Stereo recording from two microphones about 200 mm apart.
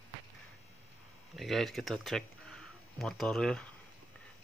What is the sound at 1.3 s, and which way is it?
Speech, centre (ahead or behind).